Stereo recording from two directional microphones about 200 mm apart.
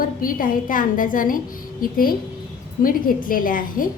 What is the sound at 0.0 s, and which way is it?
A woman's voice, 45° left (ahead or behind).